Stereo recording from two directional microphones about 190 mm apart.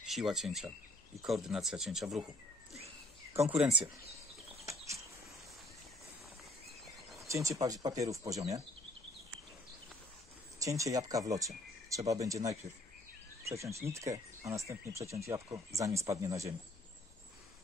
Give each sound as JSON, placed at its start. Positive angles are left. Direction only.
{"t": 0.0, "sound": "speech", "side_deg": 0}
{"t": 3.4, "sound": "speech", "side_deg": -5}
{"t": 7.2, "sound": "speech", "side_deg": -15}
{"t": 10.6, "sound": "speech", "side_deg": -15}